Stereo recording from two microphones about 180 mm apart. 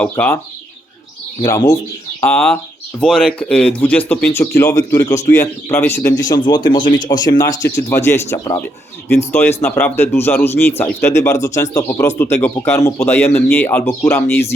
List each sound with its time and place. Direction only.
0.0 s speech: 10° left (ahead or behind)
1.4 s a man's voice: 20° left (ahead or behind)
2.2 s a man's voice: 5° left (ahead or behind)